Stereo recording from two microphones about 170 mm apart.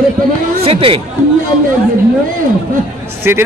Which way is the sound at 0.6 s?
35° right (ahead or behind).